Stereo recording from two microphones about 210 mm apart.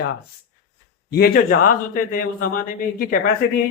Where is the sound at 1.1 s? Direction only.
45° left (ahead or behind).